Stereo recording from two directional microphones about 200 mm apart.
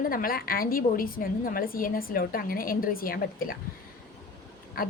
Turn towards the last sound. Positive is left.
turn(degrees=45)  # may be behind; listen again after turning